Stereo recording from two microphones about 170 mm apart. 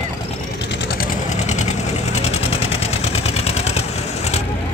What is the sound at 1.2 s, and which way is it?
Vehicle, 40° left (ahead or behind).